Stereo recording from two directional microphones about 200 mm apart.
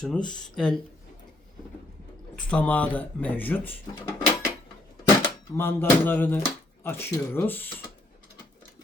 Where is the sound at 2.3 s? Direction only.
5° left (ahead or behind).